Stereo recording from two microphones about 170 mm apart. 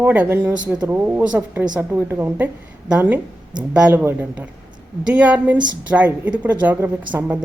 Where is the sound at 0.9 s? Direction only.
10° right (ahead or behind).